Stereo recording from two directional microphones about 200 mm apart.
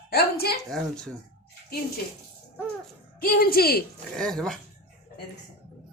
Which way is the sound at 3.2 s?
50° left (ahead or behind).